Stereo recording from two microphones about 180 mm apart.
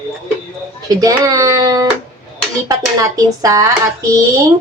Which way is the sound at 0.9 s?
20° right (ahead or behind).